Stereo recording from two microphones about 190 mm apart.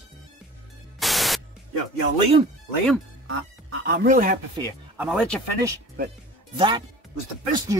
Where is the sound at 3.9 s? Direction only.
45° right (ahead or behind).